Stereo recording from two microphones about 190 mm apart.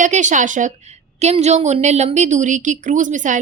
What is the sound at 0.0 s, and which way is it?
A woman's voice, 40° right (ahead or behind).